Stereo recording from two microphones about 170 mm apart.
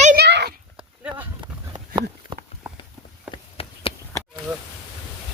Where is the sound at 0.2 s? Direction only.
80° right.